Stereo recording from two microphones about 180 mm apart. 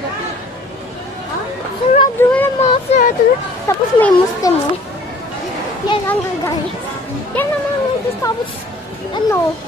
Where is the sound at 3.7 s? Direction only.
15° left (ahead or behind).